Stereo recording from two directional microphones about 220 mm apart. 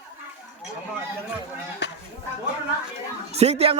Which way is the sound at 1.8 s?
50° left (ahead or behind).